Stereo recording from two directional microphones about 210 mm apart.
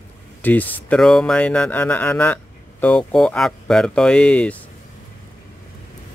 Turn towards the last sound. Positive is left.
turn(degrees=5)  # may be behind; listen again after turning